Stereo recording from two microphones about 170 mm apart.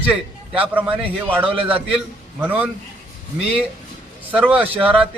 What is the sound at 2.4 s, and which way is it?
Speech, 10° right (ahead or behind).